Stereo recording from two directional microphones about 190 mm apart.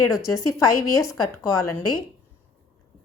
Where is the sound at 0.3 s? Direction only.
15° left (ahead or behind).